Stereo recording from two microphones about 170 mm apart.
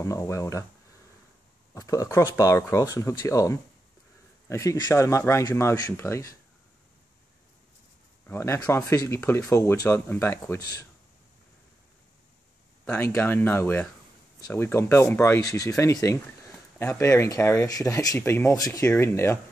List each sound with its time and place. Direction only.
0.0 s speech: 20° left (ahead or behind)
1.7 s speech: 20° left (ahead or behind)
8.3 s speech: 15° left (ahead or behind)
12.8 s speech: 10° left (ahead or behind)